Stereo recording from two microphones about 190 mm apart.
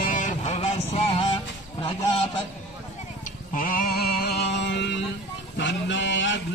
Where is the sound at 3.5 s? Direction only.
45° left (ahead or behind); by 5.0 s 65° left (ahead or behind).